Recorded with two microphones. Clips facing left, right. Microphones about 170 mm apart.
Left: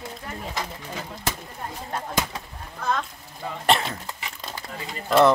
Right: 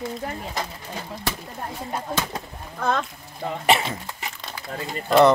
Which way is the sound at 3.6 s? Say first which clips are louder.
Right 1 dB; 5° right (ahead or behind).